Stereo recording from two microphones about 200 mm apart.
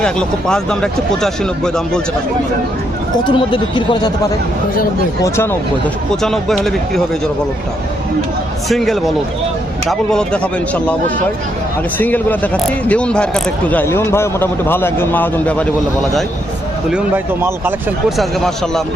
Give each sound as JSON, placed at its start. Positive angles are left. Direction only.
{"t": 0.0, "sound": "speech", "side_deg": 5}
{"t": 3.2, "sound": "speech", "side_deg": 25}
{"t": 6.2, "sound": "speech", "side_deg": 0}
{"t": 8.7, "sound": "speech", "side_deg": 0}
{"t": 11.9, "sound": "speech", "side_deg": 10}
{"t": 18.2, "sound": "speech", "side_deg": 0}